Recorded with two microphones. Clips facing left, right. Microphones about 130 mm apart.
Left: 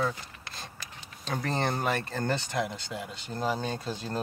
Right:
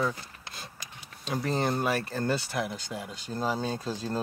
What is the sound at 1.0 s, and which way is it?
Speech, 5° right (ahead or behind).